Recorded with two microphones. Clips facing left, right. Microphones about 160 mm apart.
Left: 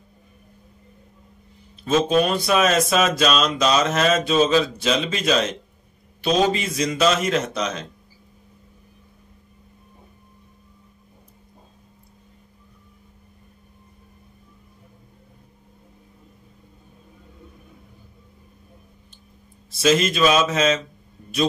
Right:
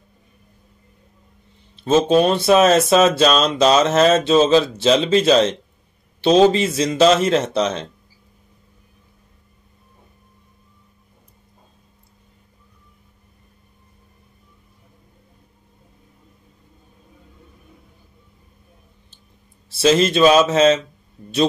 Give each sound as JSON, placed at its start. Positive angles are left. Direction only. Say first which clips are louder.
{"t": 1.9, "sound": "speech", "louder": "right 4 dB", "side_deg": -30}
{"t": 19.7, "sound": "speech", "louder": "right 4 dB", "side_deg": -30}